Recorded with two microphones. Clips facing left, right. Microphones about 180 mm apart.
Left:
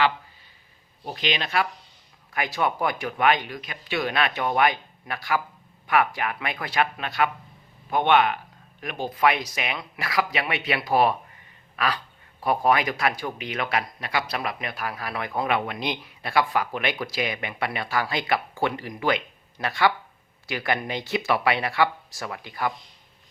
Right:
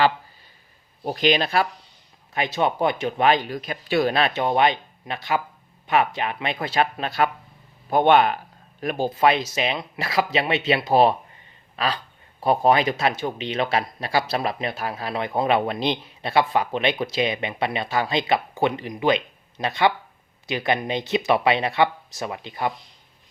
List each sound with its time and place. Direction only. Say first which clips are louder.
1.0 s speech: right 8 dB; 40° right (ahead or behind)
2.3 s speech: right 3 dB; 25° right (ahead or behind)